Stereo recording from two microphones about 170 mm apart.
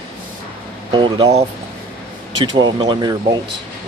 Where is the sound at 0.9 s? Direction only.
25° right (ahead or behind).